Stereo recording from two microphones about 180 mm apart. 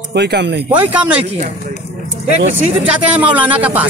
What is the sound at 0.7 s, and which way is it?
Speech, 10° right (ahead or behind).